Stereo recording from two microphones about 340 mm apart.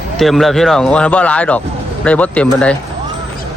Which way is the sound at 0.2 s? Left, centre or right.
Centre.